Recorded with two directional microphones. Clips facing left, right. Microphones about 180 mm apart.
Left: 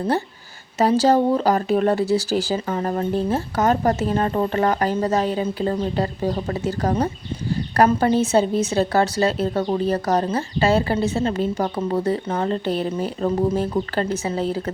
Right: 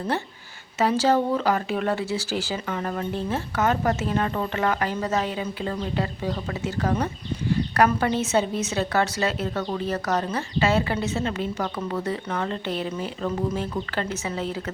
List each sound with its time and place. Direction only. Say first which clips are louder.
0.8 s speech: left 4 dB; 35° left (ahead or behind)